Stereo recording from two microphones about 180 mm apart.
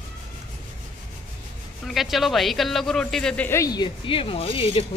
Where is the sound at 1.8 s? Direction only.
Centre (ahead or behind); by 4.8 s 30° left (ahead or behind).